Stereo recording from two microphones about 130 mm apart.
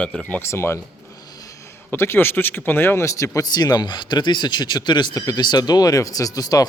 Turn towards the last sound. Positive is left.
turn(degrees=30)  # may be behind; listen again after turning